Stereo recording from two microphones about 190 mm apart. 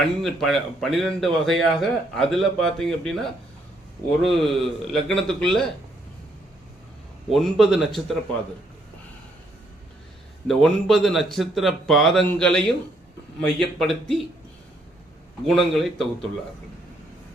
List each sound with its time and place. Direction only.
0.2 s a man's voice: centre (ahead or behind)
4.2 s a man's voice: centre (ahead or behind)
7.3 s a man's voice: centre (ahead or behind)
10.4 s a man's voice: centre (ahead or behind)
15.4 s a man's voice: centre (ahead or behind)